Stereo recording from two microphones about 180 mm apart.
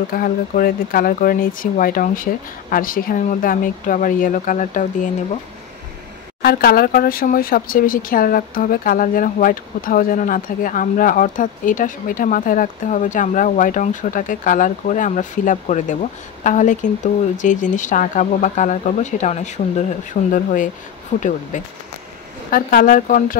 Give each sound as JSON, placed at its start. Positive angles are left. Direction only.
{"t": 0.1, "sound": "speech", "side_deg": 55}
{"t": 6.4, "sound": "speech", "side_deg": 55}